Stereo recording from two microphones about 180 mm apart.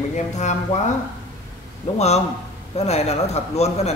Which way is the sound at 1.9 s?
35° left (ahead or behind).